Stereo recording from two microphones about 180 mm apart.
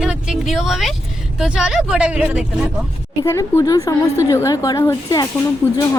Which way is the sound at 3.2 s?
15° left (ahead or behind).